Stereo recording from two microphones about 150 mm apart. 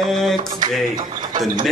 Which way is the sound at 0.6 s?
30° right (ahead or behind).